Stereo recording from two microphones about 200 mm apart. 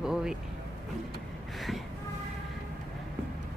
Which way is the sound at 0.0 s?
5° right (ahead or behind).